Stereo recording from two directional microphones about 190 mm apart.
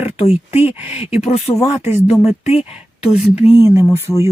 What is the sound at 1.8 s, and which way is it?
Speech, 10° right (ahead or behind).